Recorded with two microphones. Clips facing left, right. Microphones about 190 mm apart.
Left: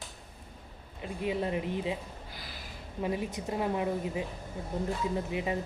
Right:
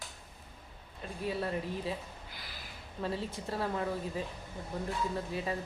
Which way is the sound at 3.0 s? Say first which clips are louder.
Left 4 dB; 15° left (ahead or behind).